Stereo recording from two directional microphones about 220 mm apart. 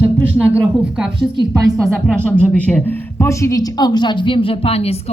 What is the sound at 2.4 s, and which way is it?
A woman's voice, 5° left (ahead or behind).